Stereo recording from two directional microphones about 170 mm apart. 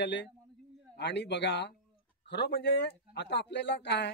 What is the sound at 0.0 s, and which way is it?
Speech, 90° left.